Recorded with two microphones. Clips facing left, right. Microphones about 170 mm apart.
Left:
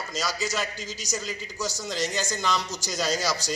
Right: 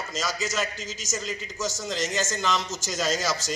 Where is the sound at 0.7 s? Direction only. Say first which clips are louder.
Even; 35° left (ahead or behind).